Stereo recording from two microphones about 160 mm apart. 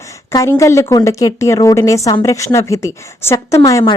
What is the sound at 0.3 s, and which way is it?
A woman's voice, 20° left (ahead or behind).